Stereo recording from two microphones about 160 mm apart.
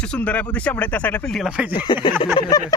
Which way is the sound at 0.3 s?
10° left (ahead or behind).